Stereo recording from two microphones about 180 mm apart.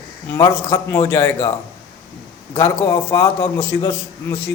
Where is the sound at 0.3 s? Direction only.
15° left (ahead or behind).